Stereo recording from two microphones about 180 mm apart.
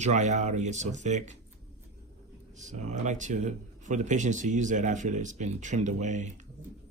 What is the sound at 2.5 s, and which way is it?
Speech, 40° right (ahead or behind).